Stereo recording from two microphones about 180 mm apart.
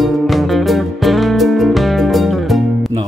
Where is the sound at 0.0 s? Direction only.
Centre (ahead or behind).